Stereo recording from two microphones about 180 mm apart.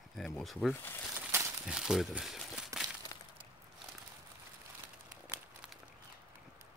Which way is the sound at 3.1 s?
20° left (ahead or behind).